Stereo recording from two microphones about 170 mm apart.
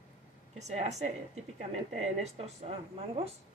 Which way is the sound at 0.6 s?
40° right (ahead or behind).